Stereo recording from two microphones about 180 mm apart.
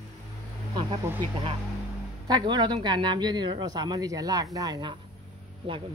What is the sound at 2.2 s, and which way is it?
Speech, 25° right (ahead or behind).